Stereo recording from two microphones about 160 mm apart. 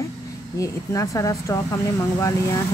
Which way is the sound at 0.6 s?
20° left (ahead or behind).